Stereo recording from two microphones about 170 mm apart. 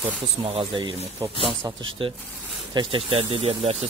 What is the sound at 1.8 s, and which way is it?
Speech, 30° right (ahead or behind).